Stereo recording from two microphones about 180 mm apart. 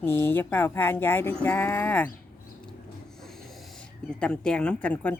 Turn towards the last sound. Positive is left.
turn(degrees=5)  # may be behind; listen again after turning